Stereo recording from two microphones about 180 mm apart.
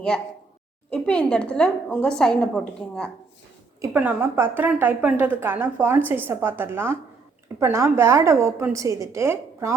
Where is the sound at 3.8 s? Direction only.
10° right (ahead or behind).